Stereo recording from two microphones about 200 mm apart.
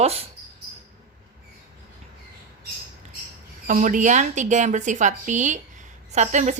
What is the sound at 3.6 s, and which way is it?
Speech, 40° right (ahead or behind).